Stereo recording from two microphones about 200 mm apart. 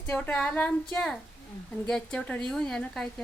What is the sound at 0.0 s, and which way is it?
Speech, 10° left (ahead or behind).